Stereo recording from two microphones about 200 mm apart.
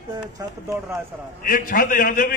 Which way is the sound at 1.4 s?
45° left (ahead or behind).